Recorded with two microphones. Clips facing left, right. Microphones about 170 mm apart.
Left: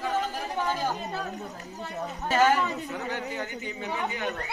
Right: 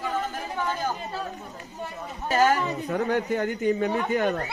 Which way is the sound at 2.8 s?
55° right (ahead or behind).